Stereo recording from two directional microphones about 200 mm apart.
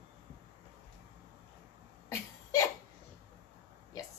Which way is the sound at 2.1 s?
15° left (ahead or behind).